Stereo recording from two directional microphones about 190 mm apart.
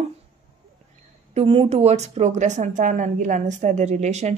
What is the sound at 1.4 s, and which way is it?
A woman's voice, 30° right (ahead or behind).